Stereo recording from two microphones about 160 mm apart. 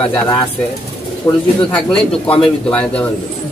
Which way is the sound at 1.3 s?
20° left (ahead or behind).